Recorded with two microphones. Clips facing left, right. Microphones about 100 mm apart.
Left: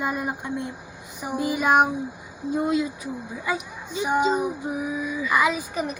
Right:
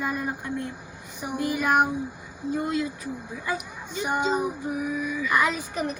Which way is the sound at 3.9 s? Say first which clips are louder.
Left 3 dB; 5° left (ahead or behind).